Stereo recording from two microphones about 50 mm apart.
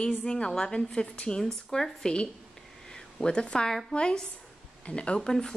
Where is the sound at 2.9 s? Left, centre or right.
Centre.